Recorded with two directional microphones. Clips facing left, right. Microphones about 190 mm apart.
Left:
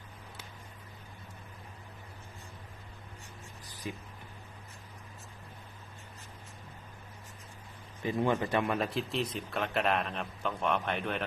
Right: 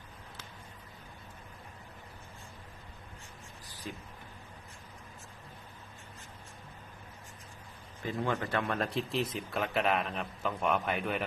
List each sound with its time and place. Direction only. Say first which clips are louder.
3.9 s speech: left 3 dB; 15° left (ahead or behind)
8.0 s speech: left 4 dB; 15° left (ahead or behind)
8.8 s a man's voice: even; centre (ahead or behind)